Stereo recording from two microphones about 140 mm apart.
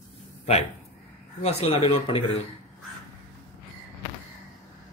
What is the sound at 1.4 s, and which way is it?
Speech, 40° left (ahead or behind).